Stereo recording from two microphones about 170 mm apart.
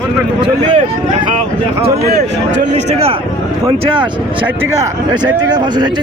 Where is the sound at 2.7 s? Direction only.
35° right (ahead or behind).